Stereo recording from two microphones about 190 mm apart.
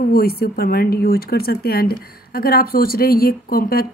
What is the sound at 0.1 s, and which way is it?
Speech, 55° left (ahead or behind).